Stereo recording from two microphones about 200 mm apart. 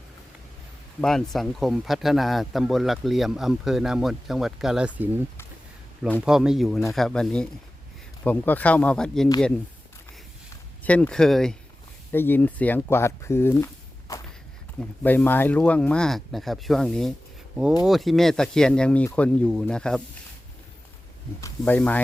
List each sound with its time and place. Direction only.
1.0 s speech: centre (ahead or behind)
6.1 s speech: 5° right (ahead or behind)
10.8 s speech: 5° left (ahead or behind)
14.1 s walk: 15° left (ahead or behind)
14.8 s speech: 10° left (ahead or behind)
21.4 s speech: 10° left (ahead or behind)